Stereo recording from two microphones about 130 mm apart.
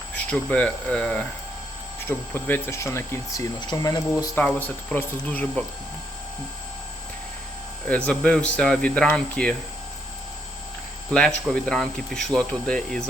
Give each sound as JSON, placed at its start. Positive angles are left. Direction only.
{"t": 0.3, "sound": "speech", "side_deg": 10}
{"t": 4.4, "sound": "speech", "side_deg": 15}
{"t": 7.9, "sound": "speech", "side_deg": 10}
{"t": 11.1, "sound": "speech", "side_deg": 5}